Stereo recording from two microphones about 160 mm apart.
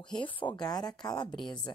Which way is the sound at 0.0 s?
5° left (ahead or behind).